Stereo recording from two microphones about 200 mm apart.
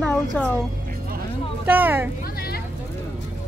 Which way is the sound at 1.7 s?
10° right (ahead or behind).